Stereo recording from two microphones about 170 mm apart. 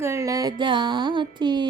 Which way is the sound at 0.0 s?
15° right (ahead or behind).